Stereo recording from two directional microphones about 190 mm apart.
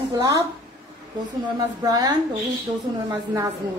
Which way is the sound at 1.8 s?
20° right (ahead or behind).